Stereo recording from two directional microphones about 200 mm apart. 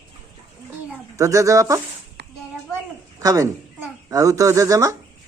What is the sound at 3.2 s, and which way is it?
Speech, 15° right (ahead or behind).